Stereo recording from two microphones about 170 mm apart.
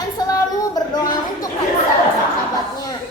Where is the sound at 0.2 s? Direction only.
25° left (ahead or behind).